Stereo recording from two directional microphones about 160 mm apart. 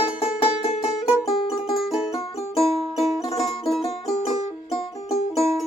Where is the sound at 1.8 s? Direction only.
Centre (ahead or behind).